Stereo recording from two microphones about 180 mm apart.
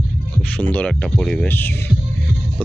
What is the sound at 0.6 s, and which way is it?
Speech, 10° left (ahead or behind).